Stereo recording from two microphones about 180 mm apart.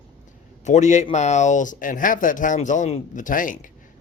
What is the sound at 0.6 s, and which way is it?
A man's voice, 40° left (ahead or behind).